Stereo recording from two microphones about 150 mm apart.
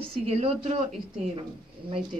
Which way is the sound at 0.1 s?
40° right (ahead or behind).